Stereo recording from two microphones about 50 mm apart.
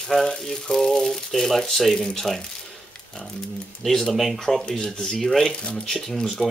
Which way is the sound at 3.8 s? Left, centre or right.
Centre.